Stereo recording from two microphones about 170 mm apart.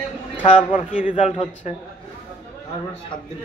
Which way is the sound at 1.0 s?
45° left (ahead or behind).